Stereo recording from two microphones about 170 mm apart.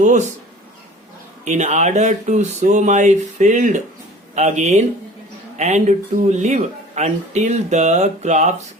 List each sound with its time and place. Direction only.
0.0 s speech: 45° right (ahead or behind)
1.5 s speech: 45° right (ahead or behind)